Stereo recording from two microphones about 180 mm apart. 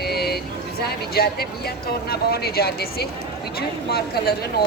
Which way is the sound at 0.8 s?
60° left (ahead or behind).